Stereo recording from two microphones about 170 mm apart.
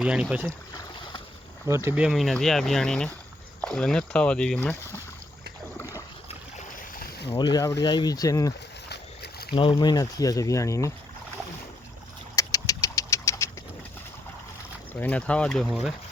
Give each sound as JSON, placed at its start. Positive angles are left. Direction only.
{"t": 0.0, "sound": "speech", "side_deg": -5}
{"t": 0.8, "sound": "boat", "side_deg": 30}
{"t": 1.6, "sound": "speech", "side_deg": -15}
{"t": 7.5, "sound": "speech", "side_deg": 20}
{"t": 8.9, "sound": "boat", "side_deg": 70}
{"t": 9.5, "sound": "speech", "side_deg": 30}
{"t": 12.4, "sound": "engine", "side_deg": 20}
{"t": 15.0, "sound": "speech", "side_deg": 5}